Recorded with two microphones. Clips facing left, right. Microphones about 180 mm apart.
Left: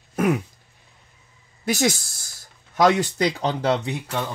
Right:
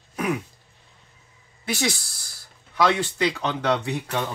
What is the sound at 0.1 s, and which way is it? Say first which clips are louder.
Throat clearing: left 5 dB; 45° left (ahead or behind).